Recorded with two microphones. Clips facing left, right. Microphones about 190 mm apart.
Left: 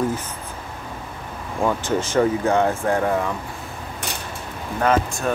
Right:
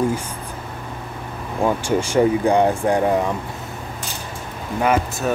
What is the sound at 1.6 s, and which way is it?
Speech, 15° right (ahead or behind).